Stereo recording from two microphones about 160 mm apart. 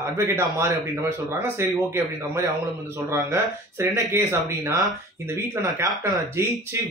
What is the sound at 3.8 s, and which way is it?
Speech, 20° right (ahead or behind).